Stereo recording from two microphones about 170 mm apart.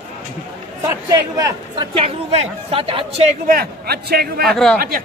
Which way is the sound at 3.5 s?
65° right (ahead or behind).